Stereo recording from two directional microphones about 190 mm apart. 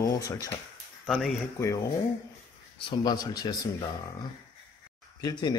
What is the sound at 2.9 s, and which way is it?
Speech, 20° left (ahead or behind).